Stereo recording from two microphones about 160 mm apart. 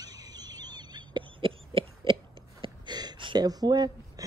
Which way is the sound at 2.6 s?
25° right (ahead or behind).